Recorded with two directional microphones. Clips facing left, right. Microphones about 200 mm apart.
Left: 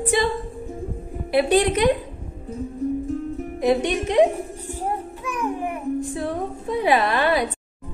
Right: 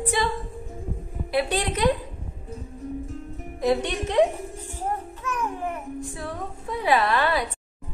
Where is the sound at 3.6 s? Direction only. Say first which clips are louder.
Left 3 dB; 15° left (ahead or behind).